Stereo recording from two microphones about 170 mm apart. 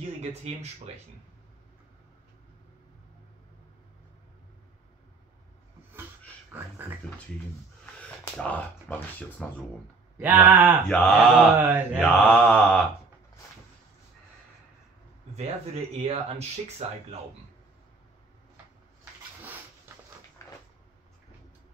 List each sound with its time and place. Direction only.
0.2 s speech: 40° right (ahead or behind)
6.5 s a sound: 10° right (ahead or behind)
8.4 s speech: 10° left (ahead or behind)
10.1 s a sound: 10° right (ahead or behind)
10.9 s mantra: 5° left (ahead or behind)
11.5 s a sound: 10° right (ahead or behind)
12.0 s speech: 5° left (ahead or behind)
15.3 s speech: 40° right (ahead or behind)
20.4 s cupboard open or close: 20° left (ahead or behind)